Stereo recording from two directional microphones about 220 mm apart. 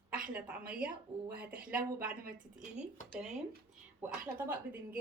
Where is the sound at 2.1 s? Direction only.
40° right (ahead or behind).